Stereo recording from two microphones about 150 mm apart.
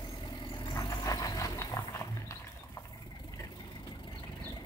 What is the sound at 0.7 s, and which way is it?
Music, 25° left (ahead or behind).